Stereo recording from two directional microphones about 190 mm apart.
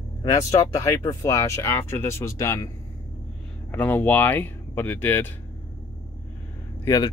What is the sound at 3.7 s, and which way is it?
Speech, 10° left (ahead or behind).